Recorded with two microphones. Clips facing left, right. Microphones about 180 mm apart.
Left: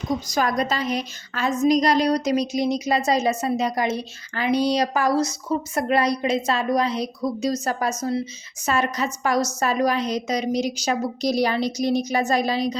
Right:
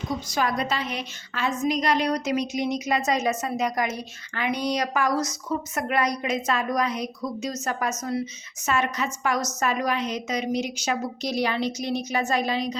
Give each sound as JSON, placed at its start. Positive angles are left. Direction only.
{"t": 0.3, "sound": "a woman's voice", "side_deg": 40}